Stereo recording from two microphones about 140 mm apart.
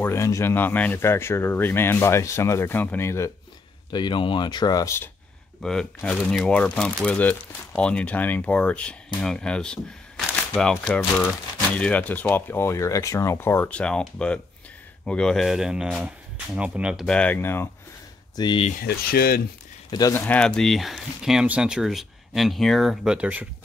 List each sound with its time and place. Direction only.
0.0 s speech: 20° left (ahead or behind)
3.9 s speech: 35° left (ahead or behind)
5.6 s speech: 5° left (ahead or behind)
18.3 s speech: 30° left (ahead or behind)
18.7 s speech: 90° left
19.9 s speech: 25° left (ahead or behind)
20.2 s speech: 10° left (ahead or behind); by 23.5 s 10° right (ahead or behind)